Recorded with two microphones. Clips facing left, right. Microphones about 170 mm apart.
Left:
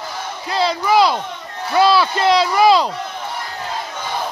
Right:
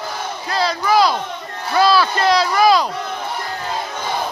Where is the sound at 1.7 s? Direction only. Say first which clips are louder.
Left 1 dB; 20° left (ahead or behind).